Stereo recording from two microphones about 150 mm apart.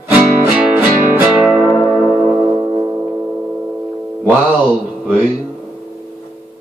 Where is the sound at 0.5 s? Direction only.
5° right (ahead or behind).